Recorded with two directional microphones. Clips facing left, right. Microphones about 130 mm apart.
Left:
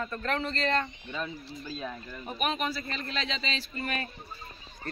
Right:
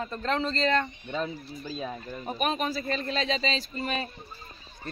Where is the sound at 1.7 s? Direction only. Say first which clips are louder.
Right 5 dB; 30° right (ahead or behind).